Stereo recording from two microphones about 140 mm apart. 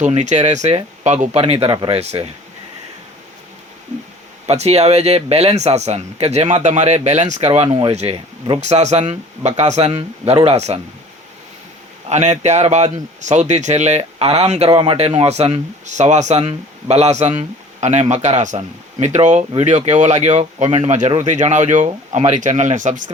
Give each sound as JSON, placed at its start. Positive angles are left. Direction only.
{"t": 0.1, "sound": "speech", "side_deg": -55}
{"t": 4.4, "sound": "speech", "side_deg": -50}
{"t": 7.7, "sound": "speech", "side_deg": -35}
{"t": 12.0, "sound": "speech", "side_deg": -55}
{"t": 16.4, "sound": "speech", "side_deg": -45}